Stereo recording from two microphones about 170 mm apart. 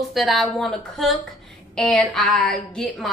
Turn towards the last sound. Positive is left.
turn(degrees=5)  # may be behind; listen again after turning